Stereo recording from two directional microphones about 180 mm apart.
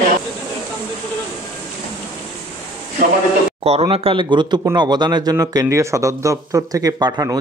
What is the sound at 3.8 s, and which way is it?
Speech, 30° right (ahead or behind).